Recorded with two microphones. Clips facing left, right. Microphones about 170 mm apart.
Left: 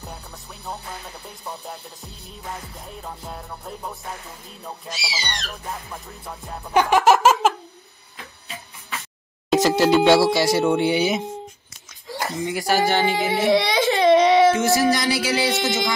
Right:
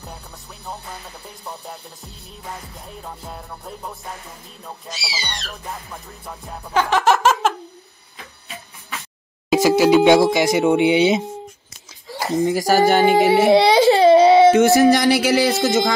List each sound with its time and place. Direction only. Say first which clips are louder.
0.7 s music: even; centre (ahead or behind)
6.7 s a sound: left 1 dB; 15° left (ahead or behind)
9.5 s speech: right 3 dB; 10° right (ahead or behind)
12.3 s speech: right 6 dB; 40° right (ahead or behind)
13.2 s a child's voice: right 8 dB; 70° right (ahead or behind)
13.5 s baby cry: right 4 dB; 30° right (ahead or behind)
14.5 s music: right 6 dB; 60° right (ahead or behind)